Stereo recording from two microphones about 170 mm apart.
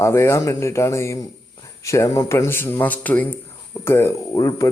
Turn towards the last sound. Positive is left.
turn(degrees=20)  # may be behind; listen again after turning